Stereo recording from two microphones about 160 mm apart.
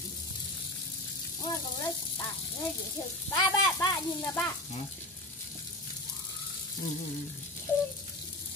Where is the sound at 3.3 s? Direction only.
20° left (ahead or behind).